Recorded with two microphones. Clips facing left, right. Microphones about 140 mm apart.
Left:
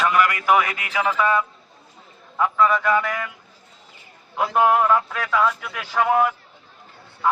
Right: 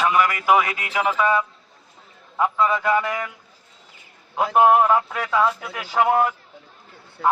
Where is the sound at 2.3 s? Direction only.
20° right (ahead or behind).